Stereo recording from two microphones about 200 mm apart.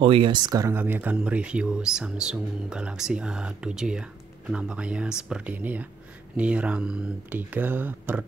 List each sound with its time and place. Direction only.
0.0 s speech: 25° right (ahead or behind); by 8.2 s 10° right (ahead or behind)